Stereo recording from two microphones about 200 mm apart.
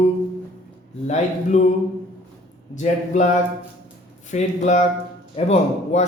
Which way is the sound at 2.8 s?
40° left (ahead or behind).